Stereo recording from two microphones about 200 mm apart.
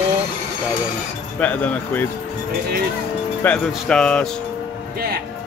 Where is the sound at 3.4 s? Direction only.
5° left (ahead or behind).